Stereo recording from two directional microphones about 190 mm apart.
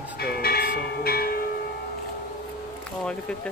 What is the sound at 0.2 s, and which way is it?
Train, 55° left (ahead or behind).